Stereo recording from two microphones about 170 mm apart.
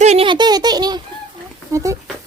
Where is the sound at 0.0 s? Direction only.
40° right (ahead or behind).